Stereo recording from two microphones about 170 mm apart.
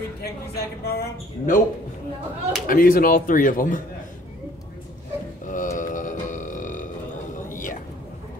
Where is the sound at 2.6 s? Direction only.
55° left (ahead or behind).